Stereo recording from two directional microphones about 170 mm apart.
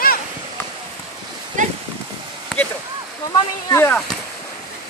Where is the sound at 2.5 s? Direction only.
5° left (ahead or behind).